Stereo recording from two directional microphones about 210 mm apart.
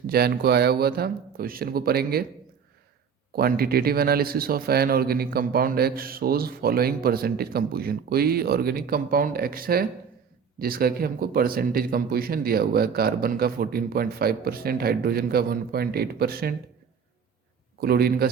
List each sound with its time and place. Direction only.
0.1 s speech: 50° right (ahead or behind)
3.3 s speech: 45° right (ahead or behind)
17.7 s speech: 50° right (ahead or behind)